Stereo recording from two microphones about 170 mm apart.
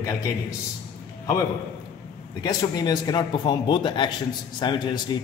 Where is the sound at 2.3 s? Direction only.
25° left (ahead or behind).